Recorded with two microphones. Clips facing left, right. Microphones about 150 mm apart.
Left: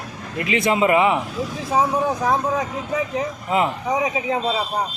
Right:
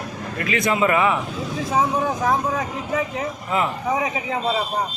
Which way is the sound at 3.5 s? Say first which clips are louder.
Left 2 dB; 20° left (ahead or behind).